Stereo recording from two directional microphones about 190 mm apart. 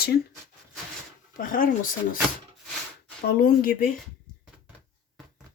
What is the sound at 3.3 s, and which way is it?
Speech, 50° left (ahead or behind).